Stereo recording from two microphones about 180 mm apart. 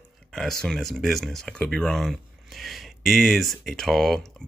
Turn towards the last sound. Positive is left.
turn(degrees=0)  # may be behind; listen again after turning